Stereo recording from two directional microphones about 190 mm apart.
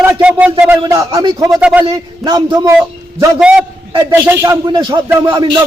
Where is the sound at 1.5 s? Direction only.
5° right (ahead or behind).